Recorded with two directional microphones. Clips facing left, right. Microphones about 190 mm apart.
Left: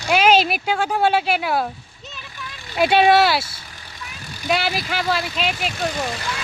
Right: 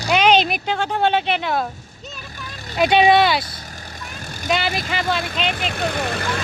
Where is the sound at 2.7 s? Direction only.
5° left (ahead or behind).